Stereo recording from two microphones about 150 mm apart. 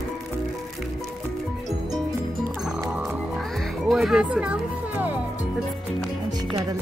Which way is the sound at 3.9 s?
5° right (ahead or behind).